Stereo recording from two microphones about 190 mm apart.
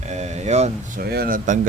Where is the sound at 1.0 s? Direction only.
55° right (ahead or behind).